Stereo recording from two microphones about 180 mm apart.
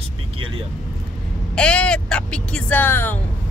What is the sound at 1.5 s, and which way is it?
Vehicle, 5° left (ahead or behind).